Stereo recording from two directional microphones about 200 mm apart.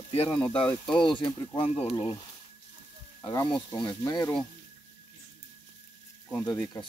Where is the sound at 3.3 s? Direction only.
20° left (ahead or behind).